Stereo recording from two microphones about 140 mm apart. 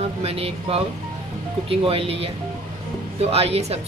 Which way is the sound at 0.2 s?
45° right (ahead or behind).